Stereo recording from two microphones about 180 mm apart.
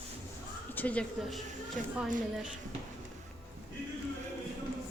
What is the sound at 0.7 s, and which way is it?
Speech, 5° left (ahead or behind).